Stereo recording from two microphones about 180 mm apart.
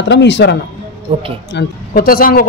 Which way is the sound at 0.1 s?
75° left (ahead or behind).